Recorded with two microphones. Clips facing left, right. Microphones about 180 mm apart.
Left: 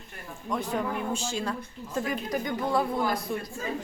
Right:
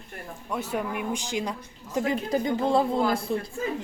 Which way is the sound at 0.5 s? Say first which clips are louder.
Even; 10° right (ahead or behind).